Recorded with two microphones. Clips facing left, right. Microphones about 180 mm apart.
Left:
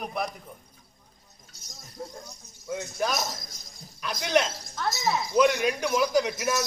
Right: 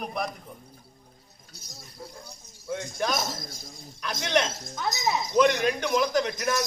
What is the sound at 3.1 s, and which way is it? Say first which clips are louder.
Speech: right 1 dB; 25° right (ahead or behind).